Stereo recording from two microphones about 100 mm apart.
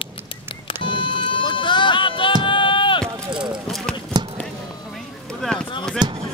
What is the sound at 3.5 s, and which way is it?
Clip-clop, centre (ahead or behind).